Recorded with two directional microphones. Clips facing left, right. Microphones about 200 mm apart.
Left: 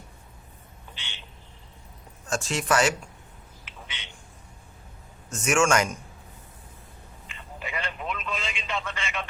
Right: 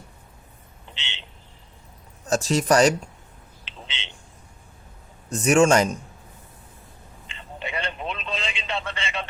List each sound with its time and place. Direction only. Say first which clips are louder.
2.2 s speech: right 7 dB; 35° right (ahead or behind)
3.8 s a sound: right 5 dB; 25° right (ahead or behind)
5.3 s speech: right 6 dB; 35° right (ahead or behind)
7.3 s telephone: right 4 dB; 30° right (ahead or behind)